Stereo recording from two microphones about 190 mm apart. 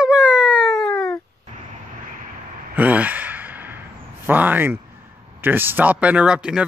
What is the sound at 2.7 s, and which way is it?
Sigh, 10° right (ahead or behind).